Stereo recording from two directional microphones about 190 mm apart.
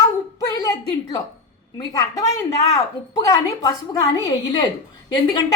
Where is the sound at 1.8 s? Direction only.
20° left (ahead or behind).